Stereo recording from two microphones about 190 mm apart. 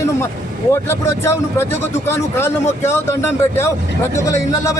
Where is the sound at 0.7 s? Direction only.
15° left (ahead or behind).